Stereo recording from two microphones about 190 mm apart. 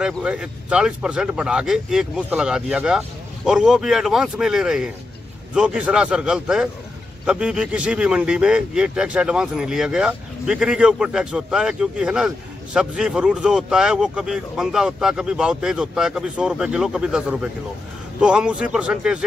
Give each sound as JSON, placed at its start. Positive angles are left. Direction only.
{"t": 0.0, "sound": "speech", "side_deg": -5}